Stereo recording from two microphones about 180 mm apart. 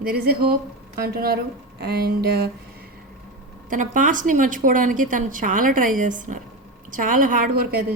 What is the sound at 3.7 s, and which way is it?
A woman's voice, 45° right (ahead or behind).